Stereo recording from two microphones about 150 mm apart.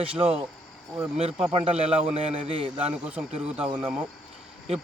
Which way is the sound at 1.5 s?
40° right (ahead or behind).